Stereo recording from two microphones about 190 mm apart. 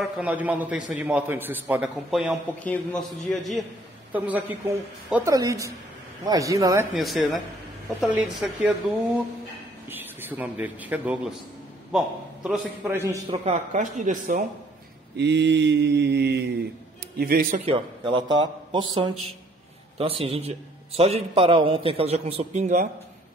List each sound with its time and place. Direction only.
0.0 s a woman's voice: 10° right (ahead or behind)
4.1 s a woman's voice: 10° right (ahead or behind)
7.0 s a man's voice: centre (ahead or behind)
9.8 s a man's voice: 10° right (ahead or behind)
12.4 s a woman's voice: 10° right (ahead or behind)
13.3 s a man's voice: 35° right (ahead or behind)
15.1 s mantra: 65° right (ahead or behind)
17.2 s speech: 50° right (ahead or behind)
17.6 s a man's voice: 25° right (ahead or behind)